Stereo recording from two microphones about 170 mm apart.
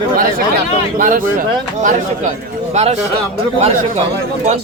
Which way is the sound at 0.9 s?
55° right (ahead or behind).